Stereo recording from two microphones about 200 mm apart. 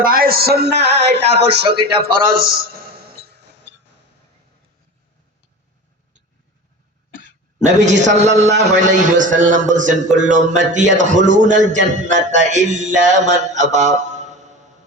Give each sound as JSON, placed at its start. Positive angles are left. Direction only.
{"t": 0.0, "sound": "speech", "side_deg": -45}
{"t": 7.9, "sound": "a man's voice", "side_deg": -35}
{"t": 11.9, "sound": "music", "side_deg": -35}